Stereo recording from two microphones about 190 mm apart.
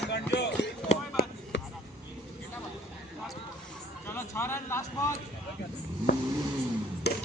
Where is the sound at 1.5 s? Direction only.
70° left (ahead or behind).